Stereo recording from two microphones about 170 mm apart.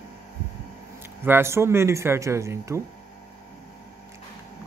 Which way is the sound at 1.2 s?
15° right (ahead or behind).